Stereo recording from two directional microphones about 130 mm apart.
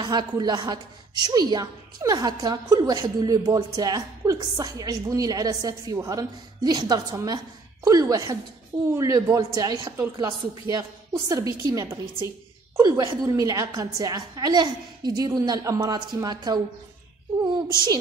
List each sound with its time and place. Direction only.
0.0 s a woman's voice: 35° right (ahead or behind)